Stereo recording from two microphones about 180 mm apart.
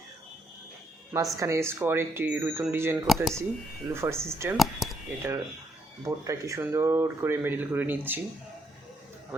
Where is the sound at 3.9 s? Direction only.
15° right (ahead or behind).